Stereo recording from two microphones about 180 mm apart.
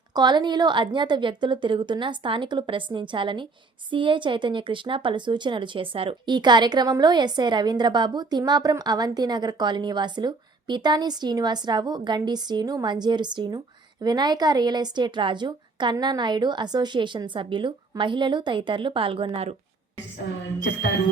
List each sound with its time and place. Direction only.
0.1 s speech: 25° right (ahead or behind)